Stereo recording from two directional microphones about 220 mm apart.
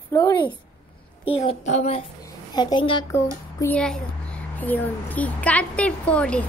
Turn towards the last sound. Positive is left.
turn(degrees=5)  # may be behind; listen again after turning